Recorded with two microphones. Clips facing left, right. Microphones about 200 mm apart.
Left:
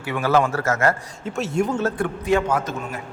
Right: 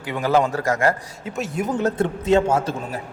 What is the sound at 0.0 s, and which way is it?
Speech, 15° right (ahead or behind).